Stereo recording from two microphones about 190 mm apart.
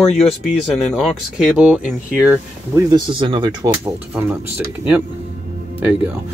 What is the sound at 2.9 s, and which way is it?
Speech, 25° right (ahead or behind).